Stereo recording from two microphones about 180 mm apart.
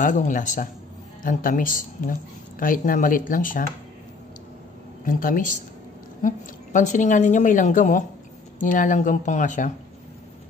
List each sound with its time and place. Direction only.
0.0 s a woman's voice: 45° left (ahead or behind)
5.0 s a woman's voice: 50° left (ahead or behind)